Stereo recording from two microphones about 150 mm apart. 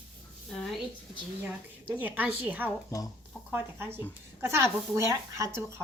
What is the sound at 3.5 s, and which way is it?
A woman's voice, 15° right (ahead or behind).